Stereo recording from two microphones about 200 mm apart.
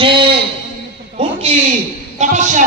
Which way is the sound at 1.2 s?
30° right (ahead or behind).